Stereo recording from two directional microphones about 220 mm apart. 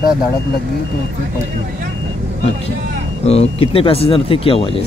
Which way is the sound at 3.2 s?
30° left (ahead or behind).